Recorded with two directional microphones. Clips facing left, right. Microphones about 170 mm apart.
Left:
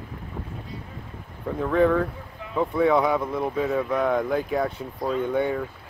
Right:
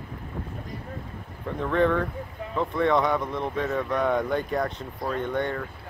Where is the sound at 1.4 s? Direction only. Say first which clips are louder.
Left 3 dB; 5° left (ahead or behind).